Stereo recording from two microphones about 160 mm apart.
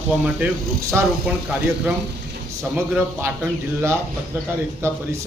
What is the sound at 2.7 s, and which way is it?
A man's voice, 10° right (ahead or behind).